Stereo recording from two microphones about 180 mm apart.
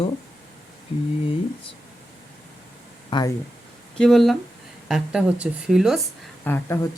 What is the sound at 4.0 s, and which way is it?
A woman's voice, centre (ahead or behind).